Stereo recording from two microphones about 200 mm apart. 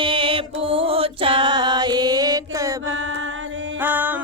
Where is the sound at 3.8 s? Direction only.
10° right (ahead or behind).